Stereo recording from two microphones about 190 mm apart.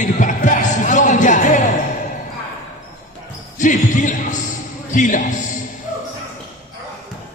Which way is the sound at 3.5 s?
40° left (ahead or behind).